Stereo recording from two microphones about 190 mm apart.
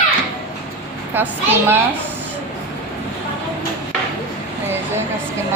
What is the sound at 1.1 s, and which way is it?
Speech, 10° right (ahead or behind).